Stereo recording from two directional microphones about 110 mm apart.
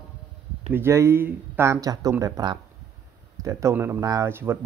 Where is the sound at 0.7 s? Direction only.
20° right (ahead or behind).